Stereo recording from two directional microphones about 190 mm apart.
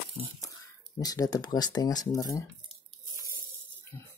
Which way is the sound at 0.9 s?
20° left (ahead or behind).